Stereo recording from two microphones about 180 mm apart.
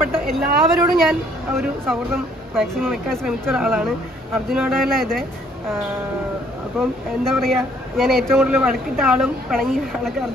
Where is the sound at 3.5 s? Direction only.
10° right (ahead or behind).